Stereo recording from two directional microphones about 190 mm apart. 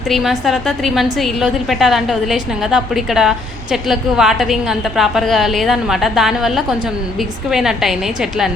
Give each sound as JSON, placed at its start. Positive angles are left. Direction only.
{"t": 0.1, "sound": "a woman's voice", "side_deg": 0}